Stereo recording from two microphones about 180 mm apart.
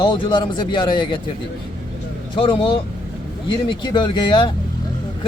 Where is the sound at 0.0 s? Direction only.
25° left (ahead or behind).